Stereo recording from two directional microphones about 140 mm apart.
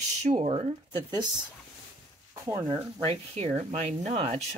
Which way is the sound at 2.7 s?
45° right (ahead or behind).